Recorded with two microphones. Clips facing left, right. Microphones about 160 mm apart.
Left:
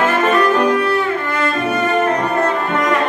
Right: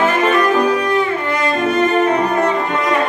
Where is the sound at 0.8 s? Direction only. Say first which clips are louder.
Even; 15° right (ahead or behind).